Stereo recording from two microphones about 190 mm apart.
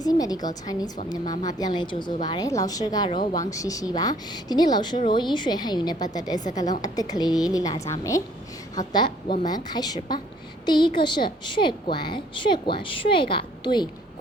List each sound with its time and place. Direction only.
0.0 s a woman's voice: 20° left (ahead or behind)